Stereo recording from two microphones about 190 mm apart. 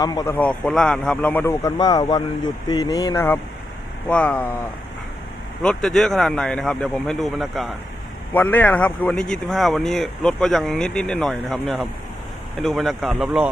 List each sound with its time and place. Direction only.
0.0 s speech: 20° left (ahead or behind)
0.3 s a man's voice: 5° left (ahead or behind)
5.6 s speech: centre (ahead or behind)